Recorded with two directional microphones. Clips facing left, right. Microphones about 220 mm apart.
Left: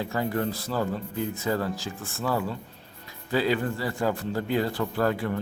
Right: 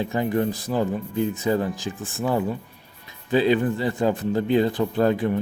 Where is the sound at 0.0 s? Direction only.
20° right (ahead or behind).